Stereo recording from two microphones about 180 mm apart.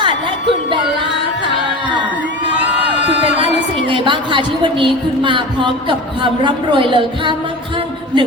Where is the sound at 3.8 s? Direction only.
25° right (ahead or behind).